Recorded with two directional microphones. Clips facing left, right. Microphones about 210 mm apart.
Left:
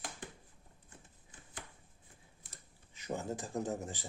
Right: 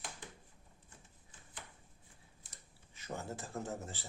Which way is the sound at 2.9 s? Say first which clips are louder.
Left 5 dB; 15° left (ahead or behind).